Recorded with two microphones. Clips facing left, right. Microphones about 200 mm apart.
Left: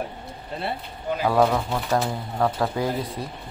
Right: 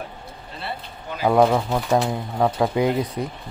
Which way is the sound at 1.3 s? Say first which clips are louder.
Right 4 dB; 20° right (ahead or behind).